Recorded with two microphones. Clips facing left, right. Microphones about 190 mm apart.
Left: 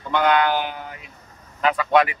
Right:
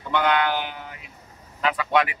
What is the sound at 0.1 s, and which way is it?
Speech, 40° left (ahead or behind).